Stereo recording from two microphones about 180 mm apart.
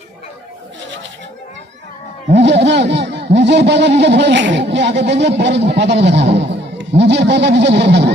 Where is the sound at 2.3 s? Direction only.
75° right (ahead or behind).